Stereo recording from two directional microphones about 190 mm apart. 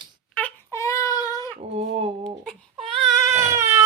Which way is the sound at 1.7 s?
30° right (ahead or behind).